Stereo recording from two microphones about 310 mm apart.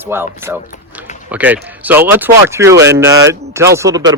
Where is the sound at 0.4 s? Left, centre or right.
Centre.